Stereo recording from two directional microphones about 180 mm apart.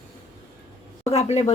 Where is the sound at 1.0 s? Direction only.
35° left (ahead or behind).